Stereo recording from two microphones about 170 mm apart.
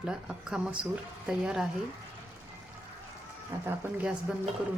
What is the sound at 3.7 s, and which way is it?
Speech, 10° right (ahead or behind).